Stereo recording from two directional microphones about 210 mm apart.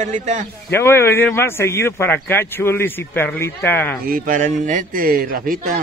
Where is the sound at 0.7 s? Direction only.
10° left (ahead or behind).